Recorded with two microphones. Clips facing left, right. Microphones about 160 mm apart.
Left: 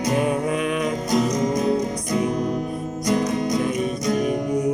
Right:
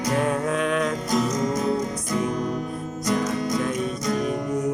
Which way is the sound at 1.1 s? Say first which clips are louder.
Left 3 dB; 20° left (ahead or behind).